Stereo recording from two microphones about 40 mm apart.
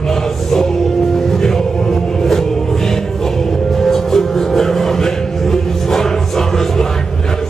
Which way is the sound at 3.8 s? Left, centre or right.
Centre.